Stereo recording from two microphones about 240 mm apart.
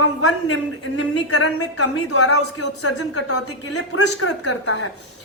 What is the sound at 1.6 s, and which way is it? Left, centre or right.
A woman's voice, left.